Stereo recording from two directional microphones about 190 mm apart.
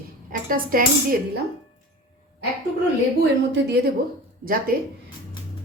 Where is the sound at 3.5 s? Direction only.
60° right (ahead or behind).